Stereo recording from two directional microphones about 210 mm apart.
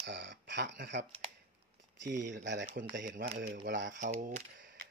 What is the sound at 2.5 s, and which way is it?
Speech, 60° right (ahead or behind).